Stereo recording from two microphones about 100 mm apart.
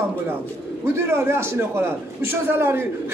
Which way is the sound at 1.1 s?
25° right (ahead or behind).